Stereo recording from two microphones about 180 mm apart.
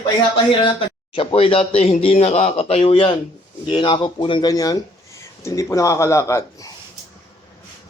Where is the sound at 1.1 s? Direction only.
30° left (ahead or behind).